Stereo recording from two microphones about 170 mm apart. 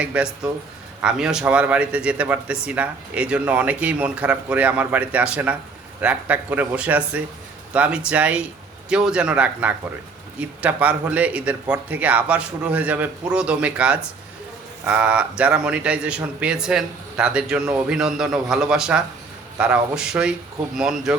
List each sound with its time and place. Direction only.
0.0 s a man's voice: 5° right (ahead or behind)